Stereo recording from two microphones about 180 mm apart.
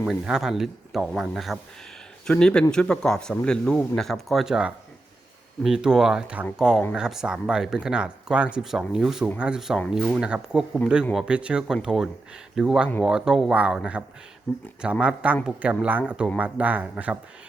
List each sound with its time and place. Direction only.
0.0 s speech: 5° right (ahead or behind)